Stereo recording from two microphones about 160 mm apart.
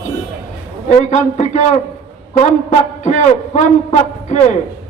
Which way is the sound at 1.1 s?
50° left (ahead or behind).